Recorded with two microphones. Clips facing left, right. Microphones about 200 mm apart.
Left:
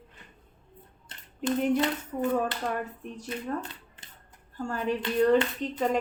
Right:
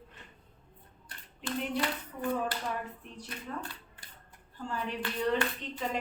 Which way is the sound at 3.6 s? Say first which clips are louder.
Left 1 dB; 20° left (ahead or behind).